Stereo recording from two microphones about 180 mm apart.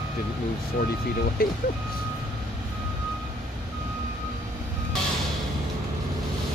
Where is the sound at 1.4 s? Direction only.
55° left (ahead or behind).